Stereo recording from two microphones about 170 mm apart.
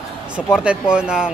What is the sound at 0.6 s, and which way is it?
Speech, 5° right (ahead or behind).